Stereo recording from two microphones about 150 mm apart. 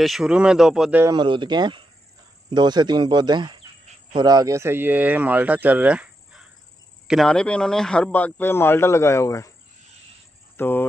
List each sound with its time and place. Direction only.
0.0 s speech: centre (ahead or behind)
1.0 s speech: 30° right (ahead or behind); by 6.4 s 10° right (ahead or behind)
7.1 s speech: 5° left (ahead or behind); by 9.5 s 20° left (ahead or behind)
10.6 s speech: 15° left (ahead or behind)